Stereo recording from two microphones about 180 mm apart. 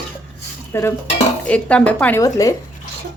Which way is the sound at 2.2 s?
20° left (ahead or behind).